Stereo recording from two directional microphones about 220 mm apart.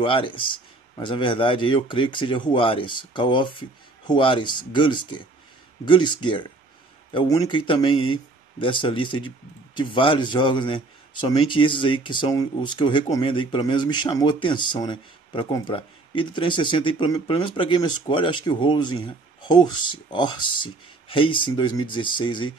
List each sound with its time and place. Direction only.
0.0 s a man's voice: 25° left (ahead or behind)